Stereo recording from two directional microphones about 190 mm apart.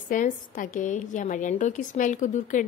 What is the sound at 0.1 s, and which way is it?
A woman's voice, 45° left (ahead or behind).